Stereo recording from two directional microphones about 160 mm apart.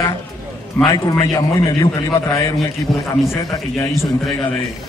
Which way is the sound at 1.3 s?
25° left (ahead or behind).